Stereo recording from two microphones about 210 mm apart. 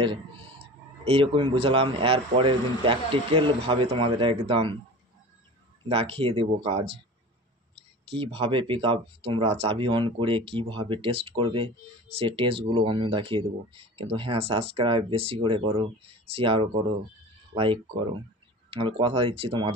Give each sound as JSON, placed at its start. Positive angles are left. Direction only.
{"t": 1.0, "sound": "speech", "side_deg": -25}
{"t": 5.9, "sound": "speech", "side_deg": -25}
{"t": 8.1, "sound": "speech", "side_deg": -25}
{"t": 18.7, "sound": "speech", "side_deg": -25}